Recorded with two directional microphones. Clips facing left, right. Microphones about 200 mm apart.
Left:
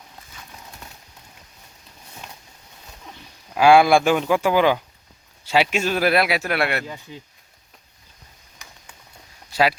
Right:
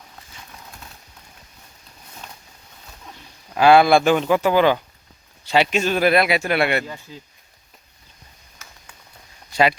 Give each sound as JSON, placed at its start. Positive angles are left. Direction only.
{"t": 3.5, "sound": "a man's voice", "side_deg": 10}
{"t": 7.1, "sound": "speech", "side_deg": 20}
{"t": 9.5, "sound": "speech", "side_deg": 5}